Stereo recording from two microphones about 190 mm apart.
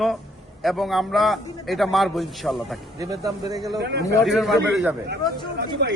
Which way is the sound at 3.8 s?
60° right (ahead or behind).